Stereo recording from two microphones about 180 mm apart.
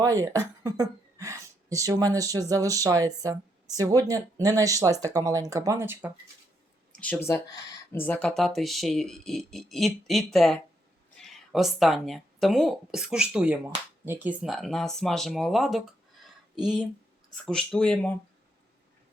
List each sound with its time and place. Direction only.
0.0 s speech: 20° right (ahead or behind)
6.9 s speech: 10° left (ahead or behind)
16.2 s a sound: 5° right (ahead or behind)
17.4 s speech: 5° left (ahead or behind)